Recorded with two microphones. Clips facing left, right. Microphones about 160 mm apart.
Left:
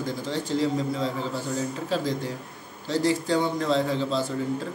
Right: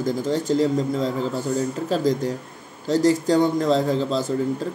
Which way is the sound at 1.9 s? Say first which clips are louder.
Right 7 dB; 40° right (ahead or behind).